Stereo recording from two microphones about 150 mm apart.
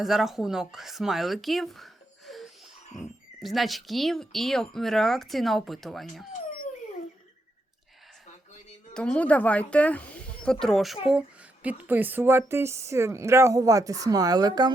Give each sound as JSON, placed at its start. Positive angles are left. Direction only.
{"t": 0.0, "sound": "speech", "side_deg": 0}
{"t": 8.9, "sound": "speech", "side_deg": 5}